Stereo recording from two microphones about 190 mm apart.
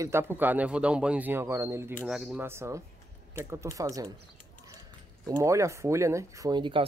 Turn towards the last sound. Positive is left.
turn(degrees=-25)  # may be behind; listen again after turning